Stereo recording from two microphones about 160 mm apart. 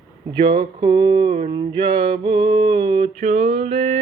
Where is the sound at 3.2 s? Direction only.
45° right (ahead or behind).